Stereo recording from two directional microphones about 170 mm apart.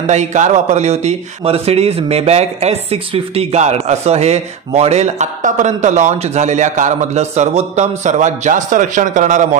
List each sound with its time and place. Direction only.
0.0 s speech: 45° right (ahead or behind)